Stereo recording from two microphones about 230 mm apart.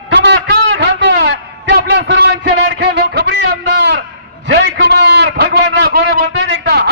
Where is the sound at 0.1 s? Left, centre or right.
Right.